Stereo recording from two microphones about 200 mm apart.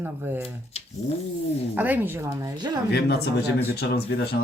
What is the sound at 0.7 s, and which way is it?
Cat, 30° left (ahead or behind).